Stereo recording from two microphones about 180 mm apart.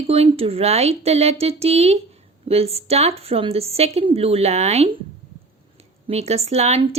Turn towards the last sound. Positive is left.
turn(degrees=-35)  # may be behind; listen again after turning